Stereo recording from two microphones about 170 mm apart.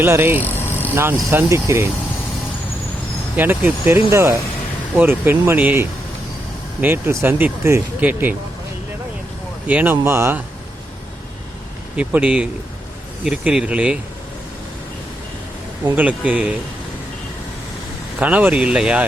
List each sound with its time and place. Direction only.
0.0 s speech: 15° right (ahead or behind)
0.6 s vehicle: 10° left (ahead or behind)
1.3 s speech: 15° right (ahead or behind)
3.3 s speech: 10° right (ahead or behind)
9.6 s speech: 10° right (ahead or behind)
11.9 s speech: 10° right (ahead or behind)
15.8 s speech: 10° right (ahead or behind)
18.2 s speech: 10° right (ahead or behind)